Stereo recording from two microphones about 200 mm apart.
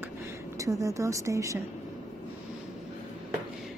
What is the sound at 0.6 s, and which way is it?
A woman's voice, 15° right (ahead or behind).